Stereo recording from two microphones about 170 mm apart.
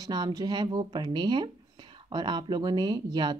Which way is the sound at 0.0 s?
25° right (ahead or behind).